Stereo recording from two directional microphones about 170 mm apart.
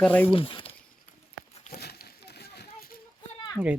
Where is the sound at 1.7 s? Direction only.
65° left (ahead or behind).